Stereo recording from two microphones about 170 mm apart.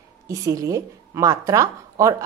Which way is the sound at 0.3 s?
20° right (ahead or behind).